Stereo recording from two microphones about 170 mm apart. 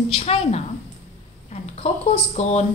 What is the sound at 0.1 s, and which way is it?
Speech, 40° left (ahead or behind).